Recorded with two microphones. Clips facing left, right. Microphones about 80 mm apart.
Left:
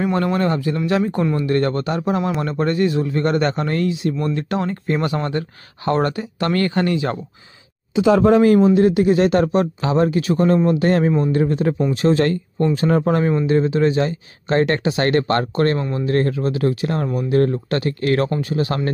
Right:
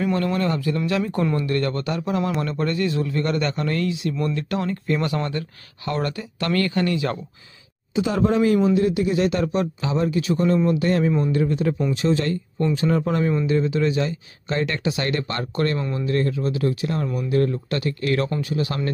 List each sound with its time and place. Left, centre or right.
0.0 s speech: left
7.9 s speech: left
8.7 s speech: left
9.8 s speech: left
12.6 s speech: left